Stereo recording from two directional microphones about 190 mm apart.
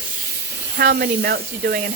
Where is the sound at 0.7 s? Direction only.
55° right (ahead or behind).